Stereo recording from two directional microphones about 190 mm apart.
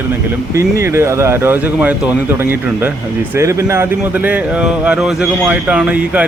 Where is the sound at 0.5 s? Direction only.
15° right (ahead or behind).